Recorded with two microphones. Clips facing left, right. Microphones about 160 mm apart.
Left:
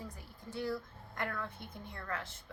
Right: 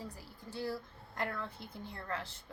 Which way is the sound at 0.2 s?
30° right (ahead or behind).